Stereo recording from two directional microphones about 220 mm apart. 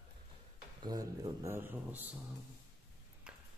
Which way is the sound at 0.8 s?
15° right (ahead or behind).